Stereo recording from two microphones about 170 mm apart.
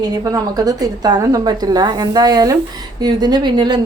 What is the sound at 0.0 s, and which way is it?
A woman's voice, 20° right (ahead or behind).